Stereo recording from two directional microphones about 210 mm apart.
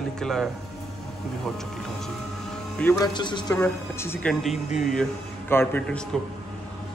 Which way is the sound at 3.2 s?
20° left (ahead or behind).